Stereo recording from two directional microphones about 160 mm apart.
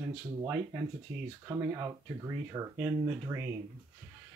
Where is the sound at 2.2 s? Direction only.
20° right (ahead or behind).